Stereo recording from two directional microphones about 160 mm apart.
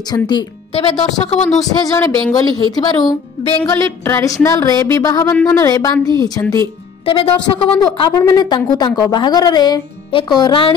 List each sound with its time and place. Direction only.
0.1 s a woman's voice: 25° left (ahead or behind)
1.6 s a woman's voice: 25° left (ahead or behind)
3.7 s a woman's voice: 15° left (ahead or behind)
7.1 s a woman's voice: 35° left (ahead or behind)
8.0 s a woman's voice: 25° left (ahead or behind)